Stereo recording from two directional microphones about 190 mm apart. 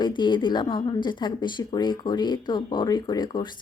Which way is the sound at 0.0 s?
25° left (ahead or behind).